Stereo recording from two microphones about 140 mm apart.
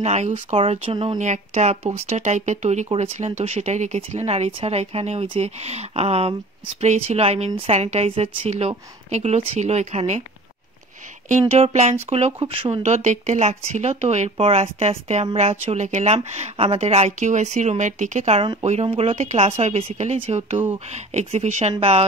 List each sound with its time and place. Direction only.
0.0 s speech: 55° right (ahead or behind)
1.1 s speech: 60° right (ahead or behind)
2.9 s speech: 45° right (ahead or behind)
11.2 s speech: 60° right (ahead or behind); by 12.8 s 40° right (ahead or behind)
12.8 s speech: 55° right (ahead or behind)